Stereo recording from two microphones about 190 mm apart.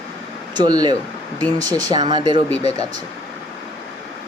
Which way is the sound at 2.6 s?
35° left (ahead or behind).